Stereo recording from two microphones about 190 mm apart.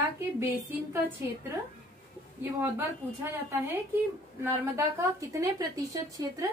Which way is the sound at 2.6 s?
10° right (ahead or behind).